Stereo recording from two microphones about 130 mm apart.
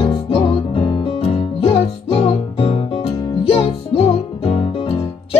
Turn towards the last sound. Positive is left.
turn(degrees=45)  # may be behind; listen again after turning